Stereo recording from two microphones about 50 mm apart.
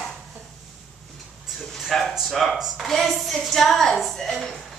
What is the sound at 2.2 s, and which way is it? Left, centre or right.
A woman's voice, centre.